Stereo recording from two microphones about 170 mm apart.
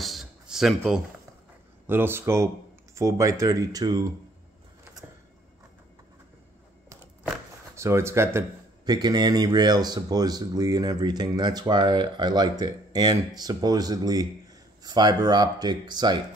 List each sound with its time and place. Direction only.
0.0 s a sound: centre (ahead or behind)
1.9 s speech: 15° right (ahead or behind)
7.2 s speech: 15° right (ahead or behind)